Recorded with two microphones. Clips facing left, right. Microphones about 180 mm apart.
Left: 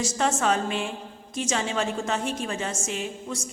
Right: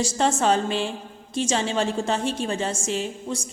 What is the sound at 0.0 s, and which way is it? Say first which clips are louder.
A woman's voice: right 3 dB; 30° right (ahead or behind).